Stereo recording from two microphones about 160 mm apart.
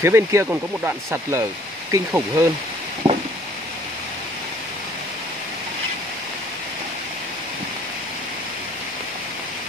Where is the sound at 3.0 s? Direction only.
35° right (ahead or behind).